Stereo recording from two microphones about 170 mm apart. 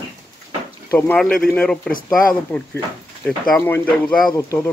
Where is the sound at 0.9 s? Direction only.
5° left (ahead or behind).